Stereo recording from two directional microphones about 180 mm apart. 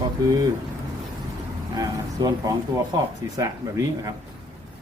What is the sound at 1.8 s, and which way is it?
Speech, 20° right (ahead or behind).